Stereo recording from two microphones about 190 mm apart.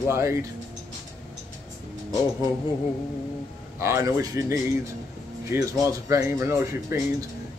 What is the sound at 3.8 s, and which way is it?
Speech, 15° right (ahead or behind).